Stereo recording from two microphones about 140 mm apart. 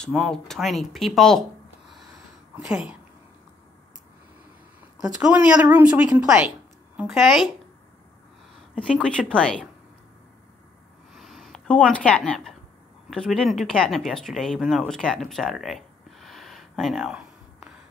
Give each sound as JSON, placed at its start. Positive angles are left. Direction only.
{"t": 0.0, "sound": "speech", "side_deg": 5}
{"t": 2.5, "sound": "a woman's voice", "side_deg": -5}
{"t": 5.2, "sound": "a woman's voice", "side_deg": -5}
{"t": 8.7, "sound": "speech", "side_deg": 5}
{"t": 11.1, "sound": "a sound", "side_deg": 0}
{"t": 13.1, "sound": "speech", "side_deg": 5}